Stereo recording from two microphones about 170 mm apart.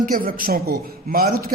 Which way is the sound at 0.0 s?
60° right (ahead or behind).